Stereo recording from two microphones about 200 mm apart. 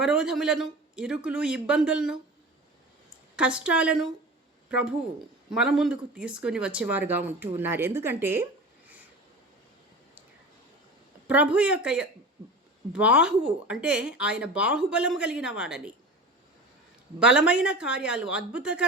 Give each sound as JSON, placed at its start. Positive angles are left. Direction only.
{"t": 0.0, "sound": "speech", "side_deg": -5}
{"t": 3.3, "sound": "speech", "side_deg": -5}
{"t": 11.3, "sound": "speech", "side_deg": -5}
{"t": 17.2, "sound": "speech", "side_deg": -5}